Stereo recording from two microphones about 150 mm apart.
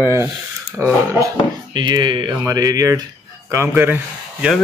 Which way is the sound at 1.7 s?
30° right (ahead or behind).